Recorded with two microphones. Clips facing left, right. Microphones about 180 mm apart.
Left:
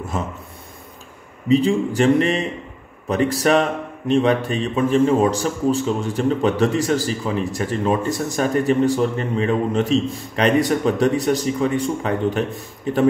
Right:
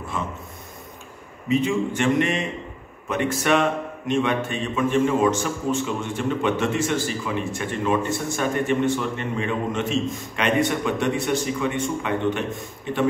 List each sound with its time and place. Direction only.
0.1 s speech: 40° left (ahead or behind)
1.5 s speech: 35° left (ahead or behind)